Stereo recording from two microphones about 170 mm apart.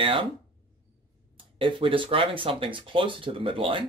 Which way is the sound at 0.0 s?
30° right (ahead or behind).